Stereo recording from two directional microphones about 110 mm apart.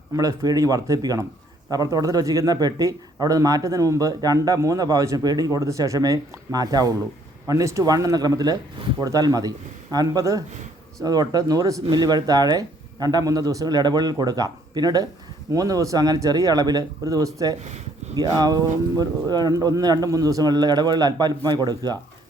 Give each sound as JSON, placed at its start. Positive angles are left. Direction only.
{"t": 0.1, "sound": "speech", "side_deg": -30}